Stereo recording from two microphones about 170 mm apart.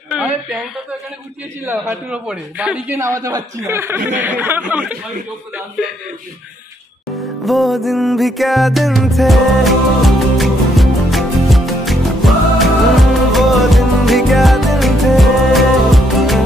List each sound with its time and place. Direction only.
0.1 s a sound: 5° right (ahead or behind)
1.7 s a man's voice: 10° right (ahead or behind)
7.2 s music: centre (ahead or behind)